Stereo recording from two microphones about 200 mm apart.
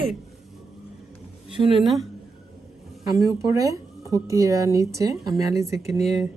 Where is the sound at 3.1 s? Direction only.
15° right (ahead or behind).